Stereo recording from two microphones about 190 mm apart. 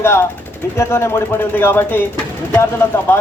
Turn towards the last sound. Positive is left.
turn(degrees=15)  # may be behind; listen again after turning